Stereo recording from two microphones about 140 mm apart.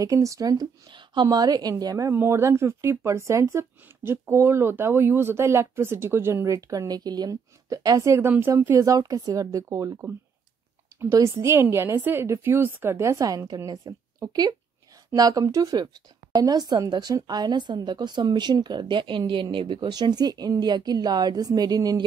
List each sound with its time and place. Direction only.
0.0 s a woman's voice: 25° right (ahead or behind)